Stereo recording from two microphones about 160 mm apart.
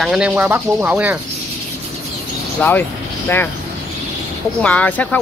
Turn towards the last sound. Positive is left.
turn(degrees=10)  # may be behind; listen again after turning